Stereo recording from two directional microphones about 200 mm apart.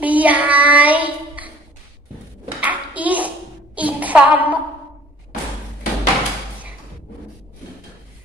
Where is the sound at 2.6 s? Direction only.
5° right (ahead or behind).